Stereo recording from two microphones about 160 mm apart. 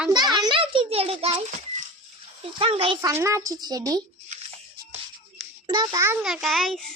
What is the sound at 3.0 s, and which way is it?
A woman's voice, 20° right (ahead or behind).